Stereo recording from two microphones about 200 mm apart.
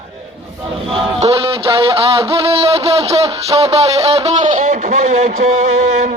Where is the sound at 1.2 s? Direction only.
30° right (ahead or behind).